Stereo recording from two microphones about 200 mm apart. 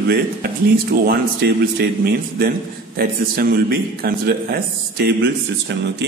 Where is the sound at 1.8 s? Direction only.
50° right (ahead or behind).